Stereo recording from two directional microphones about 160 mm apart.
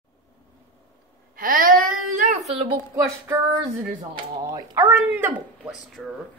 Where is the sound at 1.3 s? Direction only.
60° right (ahead or behind).